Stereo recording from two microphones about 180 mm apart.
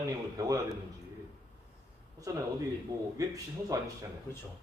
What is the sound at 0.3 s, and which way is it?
Speech, 20° right (ahead or behind).